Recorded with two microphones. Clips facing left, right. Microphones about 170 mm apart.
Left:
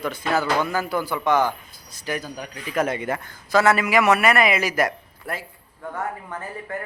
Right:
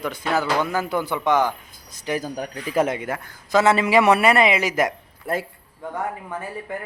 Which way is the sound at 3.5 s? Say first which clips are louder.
Right 1 dB; 25° right (ahead or behind).